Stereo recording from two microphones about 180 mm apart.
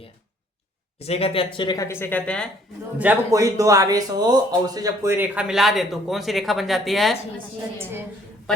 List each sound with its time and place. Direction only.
0.9 s speech: 35° left (ahead or behind); by 2.5 s 5° left (ahead or behind)
3.0 s speech: 15° right (ahead or behind)